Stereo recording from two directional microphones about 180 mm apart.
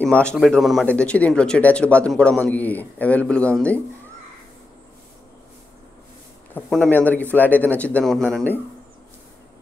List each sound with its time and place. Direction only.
0.0 s speech: 5° left (ahead or behind)
6.5 s speech: 5° left (ahead or behind)